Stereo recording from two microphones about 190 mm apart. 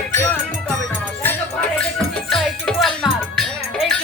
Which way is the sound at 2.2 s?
Centre (ahead or behind).